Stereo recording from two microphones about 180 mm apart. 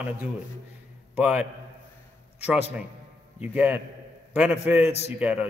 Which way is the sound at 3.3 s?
10° right (ahead or behind).